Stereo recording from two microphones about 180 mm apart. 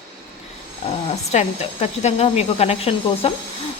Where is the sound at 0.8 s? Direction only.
35° left (ahead or behind).